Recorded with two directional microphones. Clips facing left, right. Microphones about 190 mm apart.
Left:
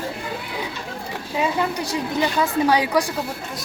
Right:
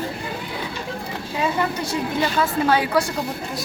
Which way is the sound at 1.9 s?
15° left (ahead or behind).